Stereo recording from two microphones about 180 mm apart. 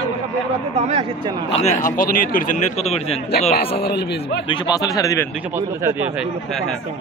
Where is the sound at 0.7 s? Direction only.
35° right (ahead or behind).